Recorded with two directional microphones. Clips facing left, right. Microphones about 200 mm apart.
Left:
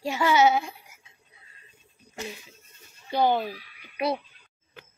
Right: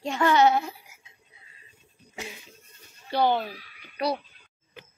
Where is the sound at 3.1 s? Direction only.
15° left (ahead or behind).